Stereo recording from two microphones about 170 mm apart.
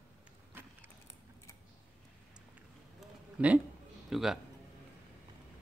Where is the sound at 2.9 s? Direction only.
10° right (ahead or behind).